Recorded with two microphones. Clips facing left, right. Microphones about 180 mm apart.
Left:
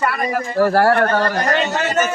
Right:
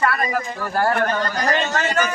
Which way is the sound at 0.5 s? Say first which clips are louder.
Left 9 dB; 75° left (ahead or behind).